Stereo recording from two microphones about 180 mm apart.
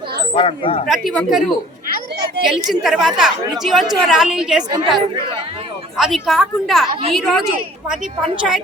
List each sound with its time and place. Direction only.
0.3 s speech: 30° left (ahead or behind)
0.9 s a woman's voice: centre (ahead or behind)
6.0 s a woman's voice: centre (ahead or behind)